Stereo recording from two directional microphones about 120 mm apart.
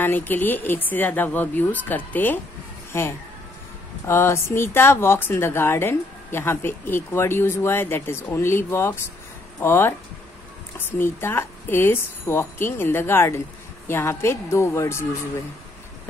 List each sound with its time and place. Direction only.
0.0 s speech: 15° left (ahead or behind)